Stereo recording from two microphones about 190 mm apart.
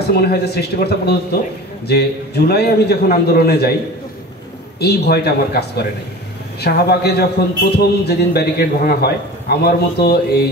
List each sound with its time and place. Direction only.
0.1 s a man's voice: 55° left (ahead or behind)
4.7 s a man's voice: 60° left (ahead or behind)